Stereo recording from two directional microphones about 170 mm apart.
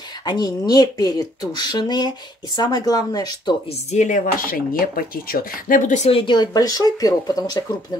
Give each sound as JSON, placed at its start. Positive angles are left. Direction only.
{"t": 0.2, "sound": "speech", "side_deg": 25}
{"t": 3.9, "sound": "speech", "side_deg": 45}
{"t": 6.0, "sound": "speech", "side_deg": 30}